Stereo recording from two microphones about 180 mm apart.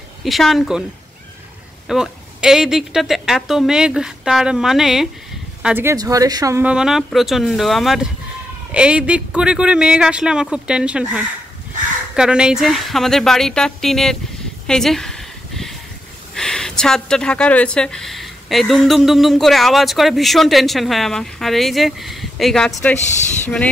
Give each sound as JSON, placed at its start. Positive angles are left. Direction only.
{"t": 0.2, "sound": "speech", "side_deg": 0}
{"t": 1.9, "sound": "speech", "side_deg": -5}
{"t": 6.6, "sound": "speech", "side_deg": -5}
{"t": 14.7, "sound": "a sound", "side_deg": 0}
{"t": 16.3, "sound": "speech", "side_deg": 5}